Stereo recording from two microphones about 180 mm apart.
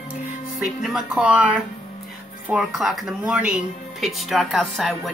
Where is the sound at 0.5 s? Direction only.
Centre (ahead or behind).